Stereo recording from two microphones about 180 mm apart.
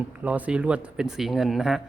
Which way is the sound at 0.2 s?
10° right (ahead or behind).